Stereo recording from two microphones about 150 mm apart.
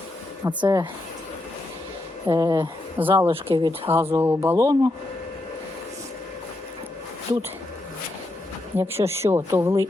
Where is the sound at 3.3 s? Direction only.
35° right (ahead or behind).